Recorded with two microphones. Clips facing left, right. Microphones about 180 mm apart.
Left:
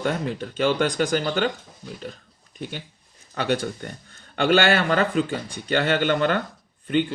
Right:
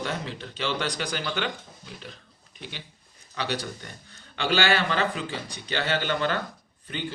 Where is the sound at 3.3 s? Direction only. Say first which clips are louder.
Left 7 dB; 50° left (ahead or behind).